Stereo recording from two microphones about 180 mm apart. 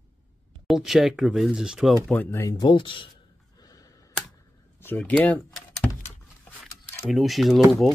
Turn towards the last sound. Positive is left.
turn(degrees=0)  # may be behind; listen again after turning